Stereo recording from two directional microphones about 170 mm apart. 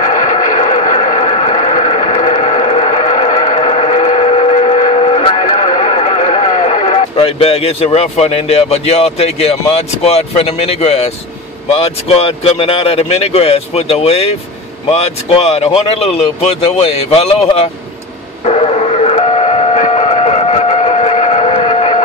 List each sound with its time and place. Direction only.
0.0 s vehicle: 50° left (ahead or behind)
10.0 s a man's voice: 35° left (ahead or behind)
18.4 s train: 40° left (ahead or behind)